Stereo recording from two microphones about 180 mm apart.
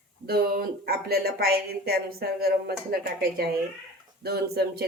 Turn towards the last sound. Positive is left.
turn(degrees=-60)  # may be behind; listen again after turning